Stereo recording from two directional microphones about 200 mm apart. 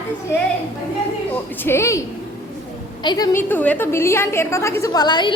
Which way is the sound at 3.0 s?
20° left (ahead or behind).